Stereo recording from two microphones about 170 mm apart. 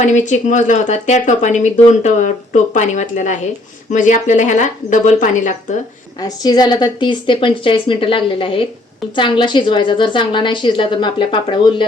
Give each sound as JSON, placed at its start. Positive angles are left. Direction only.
{"t": 0.0, "sound": "speech", "side_deg": 45}
{"t": 6.1, "sound": "a woman's voice", "side_deg": 25}